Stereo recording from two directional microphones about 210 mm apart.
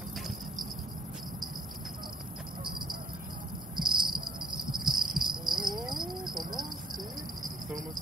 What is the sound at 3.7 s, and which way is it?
Cricket, 20° right (ahead or behind).